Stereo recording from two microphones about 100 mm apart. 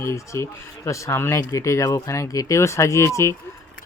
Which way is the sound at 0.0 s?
25° left (ahead or behind).